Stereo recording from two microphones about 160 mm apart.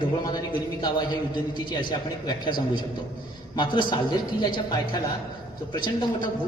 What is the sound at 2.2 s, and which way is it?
A man's voice, 30° left (ahead or behind).